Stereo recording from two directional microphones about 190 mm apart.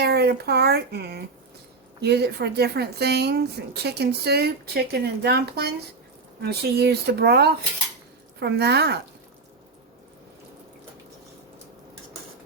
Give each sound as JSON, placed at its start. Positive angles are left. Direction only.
{"t": 0.0, "sound": "speech", "side_deg": -60}